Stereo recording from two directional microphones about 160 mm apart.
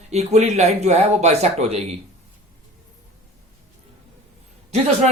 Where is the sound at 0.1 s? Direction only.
45° right (ahead or behind).